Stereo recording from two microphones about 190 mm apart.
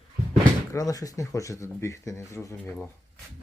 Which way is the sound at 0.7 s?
20° left (ahead or behind).